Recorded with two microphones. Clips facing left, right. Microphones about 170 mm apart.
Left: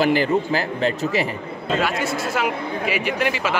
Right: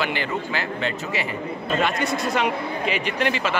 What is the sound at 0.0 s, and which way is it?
Speech, 40° left (ahead or behind).